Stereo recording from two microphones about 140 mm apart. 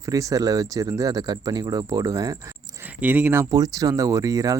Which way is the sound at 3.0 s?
10° right (ahead or behind).